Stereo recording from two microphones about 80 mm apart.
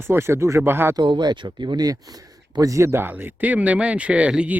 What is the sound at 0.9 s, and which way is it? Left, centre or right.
Speech, right.